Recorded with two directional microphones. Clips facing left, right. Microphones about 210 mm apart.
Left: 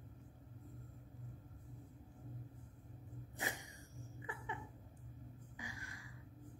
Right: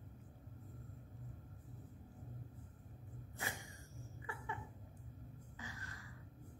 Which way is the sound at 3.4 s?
20° left (ahead or behind).